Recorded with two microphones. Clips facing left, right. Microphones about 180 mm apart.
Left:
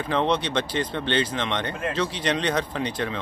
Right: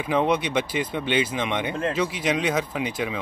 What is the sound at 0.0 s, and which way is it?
Speech, 10° right (ahead or behind).